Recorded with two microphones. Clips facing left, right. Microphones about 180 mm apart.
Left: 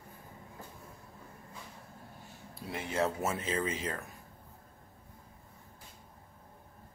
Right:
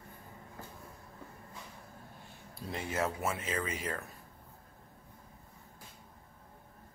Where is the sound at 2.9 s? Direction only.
35° left (ahead or behind).